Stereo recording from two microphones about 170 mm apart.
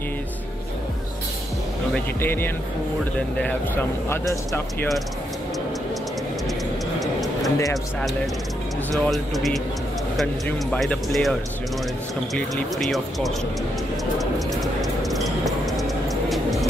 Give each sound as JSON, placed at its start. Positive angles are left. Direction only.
{"t": 2.0, "sound": "speech", "side_deg": 15}
{"t": 7.0, "sound": "tick-tock", "side_deg": 0}
{"t": 8.9, "sound": "speech", "side_deg": 0}
{"t": 10.7, "sound": "speech", "side_deg": 5}
{"t": 12.4, "sound": "speech", "side_deg": 5}
{"t": 14.1, "sound": "music", "side_deg": 0}